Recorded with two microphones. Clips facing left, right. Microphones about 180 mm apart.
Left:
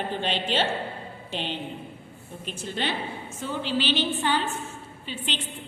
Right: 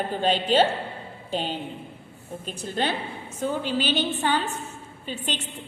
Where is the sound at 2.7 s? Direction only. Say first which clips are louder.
Right 3 dB; 45° right (ahead or behind).